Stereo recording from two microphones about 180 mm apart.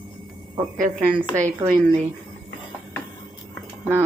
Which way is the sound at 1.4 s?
45° right (ahead or behind).